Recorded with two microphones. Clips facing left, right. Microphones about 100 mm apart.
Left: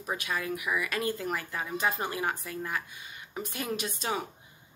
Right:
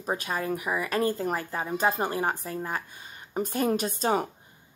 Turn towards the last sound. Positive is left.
turn(degrees=-40)  # may be behind; listen again after turning